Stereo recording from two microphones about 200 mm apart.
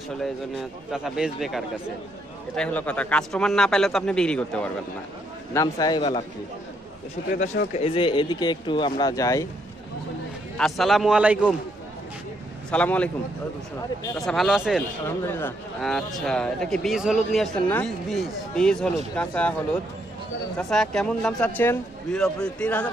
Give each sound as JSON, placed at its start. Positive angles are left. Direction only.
{"t": 0.1, "sound": "speech", "side_deg": 0}
{"t": 5.5, "sound": "speech", "side_deg": 15}
{"t": 7.2, "sound": "speech", "side_deg": 40}
{"t": 7.7, "sound": "speech", "side_deg": 30}
{"t": 10.6, "sound": "speech", "side_deg": 0}
{"t": 12.7, "sound": "a man's voice", "side_deg": 5}
{"t": 14.1, "sound": "speech", "side_deg": 0}
{"t": 15.0, "sound": "speech", "side_deg": 10}